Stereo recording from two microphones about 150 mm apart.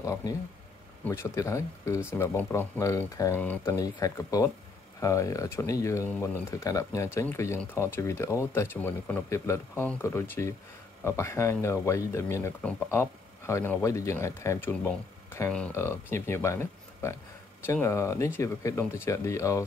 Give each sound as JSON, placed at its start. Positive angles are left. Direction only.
{"t": 0.0, "sound": "speech", "side_deg": 20}
{"t": 3.7, "sound": "speech", "side_deg": 25}
{"t": 14.7, "sound": "speech", "side_deg": 10}